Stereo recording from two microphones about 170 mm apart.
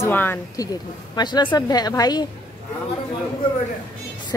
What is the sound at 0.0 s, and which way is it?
Speech, 10° left (ahead or behind).